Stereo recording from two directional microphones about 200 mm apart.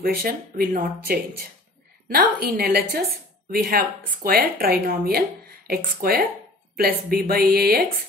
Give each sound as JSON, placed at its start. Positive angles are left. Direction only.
{"t": 0.0, "sound": "speech", "side_deg": -45}